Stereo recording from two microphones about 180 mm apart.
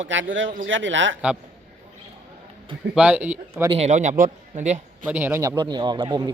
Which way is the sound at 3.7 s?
40° right (ahead or behind).